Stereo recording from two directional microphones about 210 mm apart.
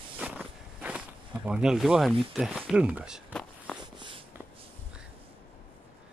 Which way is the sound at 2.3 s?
Centre (ahead or behind).